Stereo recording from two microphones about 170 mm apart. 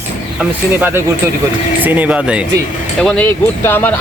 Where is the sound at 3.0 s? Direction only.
5° left (ahead or behind).